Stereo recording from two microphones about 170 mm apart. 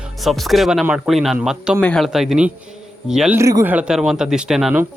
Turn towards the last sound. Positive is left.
turn(degrees=-5)  # may be behind; listen again after turning